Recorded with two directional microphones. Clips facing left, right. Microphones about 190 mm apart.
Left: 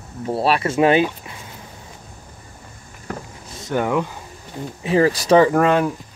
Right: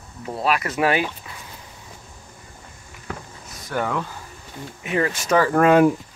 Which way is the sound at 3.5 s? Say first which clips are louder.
Left 5 dB; 20° left (ahead or behind).